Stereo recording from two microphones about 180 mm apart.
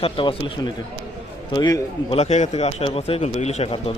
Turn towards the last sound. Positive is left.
turn(degrees=35)  # may be behind; listen again after turning